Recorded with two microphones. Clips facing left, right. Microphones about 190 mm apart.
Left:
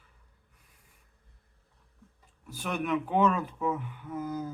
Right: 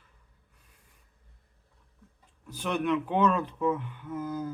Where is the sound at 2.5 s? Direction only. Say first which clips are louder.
Right 2 dB; 10° left (ahead or behind).